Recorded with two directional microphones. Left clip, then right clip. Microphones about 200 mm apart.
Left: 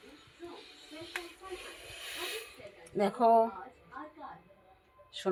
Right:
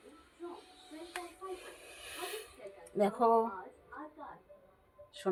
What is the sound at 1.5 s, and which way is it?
Hiss, 20° left (ahead or behind).